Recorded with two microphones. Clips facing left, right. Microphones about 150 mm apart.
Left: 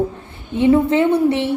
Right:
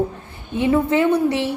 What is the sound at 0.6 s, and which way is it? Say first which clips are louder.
Speech: left 3 dB; 25° left (ahead or behind).